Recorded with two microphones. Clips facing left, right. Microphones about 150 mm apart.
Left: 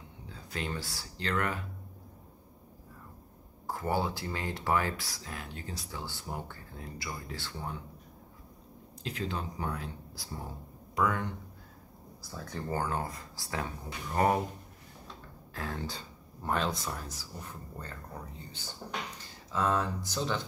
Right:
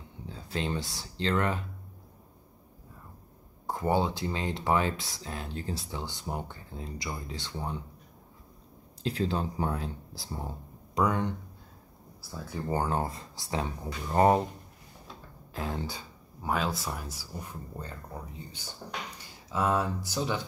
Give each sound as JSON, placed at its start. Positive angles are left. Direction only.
{"t": 0.3, "sound": "speech", "side_deg": -30}
{"t": 3.6, "sound": "speech", "side_deg": -20}
{"t": 9.0, "sound": "speech", "side_deg": -35}
{"t": 12.2, "sound": "speech", "side_deg": -5}
{"t": 12.7, "sound": "speech", "side_deg": -25}
{"t": 15.5, "sound": "speech", "side_deg": -15}